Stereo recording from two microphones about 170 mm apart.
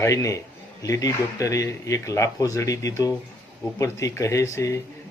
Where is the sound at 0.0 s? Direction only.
20° left (ahead or behind).